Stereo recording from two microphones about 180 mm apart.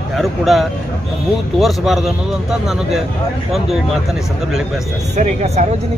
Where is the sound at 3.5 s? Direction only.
Centre (ahead or behind).